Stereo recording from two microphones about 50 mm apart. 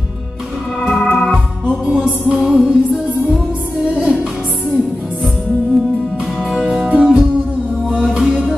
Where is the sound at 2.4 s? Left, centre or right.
Centre.